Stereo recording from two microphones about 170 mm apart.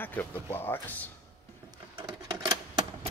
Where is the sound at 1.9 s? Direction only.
25° right (ahead or behind).